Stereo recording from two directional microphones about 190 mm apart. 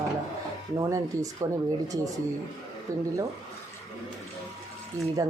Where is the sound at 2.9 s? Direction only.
15° right (ahead or behind).